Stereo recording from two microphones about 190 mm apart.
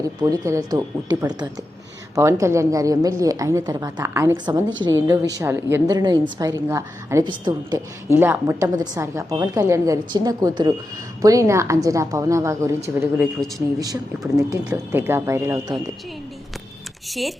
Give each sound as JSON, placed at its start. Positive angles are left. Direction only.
{"t": 0.2, "sound": "a woman's voice", "side_deg": -15}
{"t": 17.1, "sound": "speech", "side_deg": 0}